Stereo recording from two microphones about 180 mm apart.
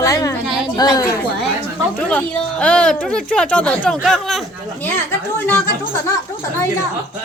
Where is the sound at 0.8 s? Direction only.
20° left (ahead or behind).